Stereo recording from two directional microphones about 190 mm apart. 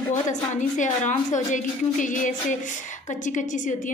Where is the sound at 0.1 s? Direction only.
40° left (ahead or behind).